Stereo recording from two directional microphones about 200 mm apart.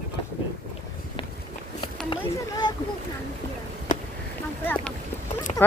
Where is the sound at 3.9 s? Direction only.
40° left (ahead or behind).